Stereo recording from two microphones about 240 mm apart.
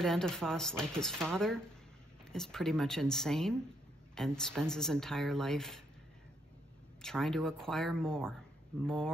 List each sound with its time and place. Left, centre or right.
0.0 s a woman's voice: centre
7.0 s a woman's voice: centre